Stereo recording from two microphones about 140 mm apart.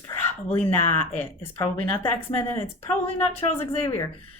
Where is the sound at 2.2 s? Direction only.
45° left (ahead or behind).